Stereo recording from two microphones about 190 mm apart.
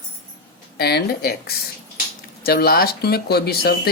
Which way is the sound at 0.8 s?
60° left (ahead or behind).